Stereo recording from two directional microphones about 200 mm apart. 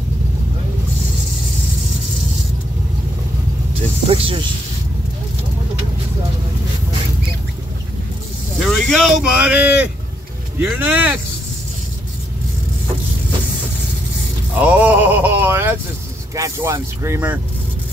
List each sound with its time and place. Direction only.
4.1 s speech: 30° right (ahead or behind)
8.5 s speech: centre (ahead or behind)
14.6 s a sound: 10° right (ahead or behind)
16.3 s speech: 15° right (ahead or behind)